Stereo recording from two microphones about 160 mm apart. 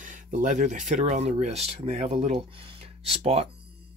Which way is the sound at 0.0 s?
55° right (ahead or behind).